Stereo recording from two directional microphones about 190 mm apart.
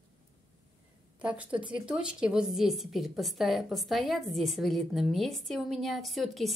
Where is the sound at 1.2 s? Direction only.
5° right (ahead or behind).